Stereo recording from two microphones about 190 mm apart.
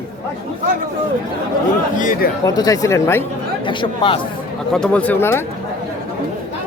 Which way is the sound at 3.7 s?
25° left (ahead or behind).